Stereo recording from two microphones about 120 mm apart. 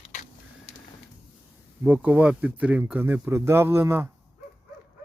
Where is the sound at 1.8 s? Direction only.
15° right (ahead or behind).